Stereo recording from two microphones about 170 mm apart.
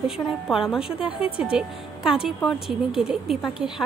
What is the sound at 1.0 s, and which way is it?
Speech, 30° left (ahead or behind).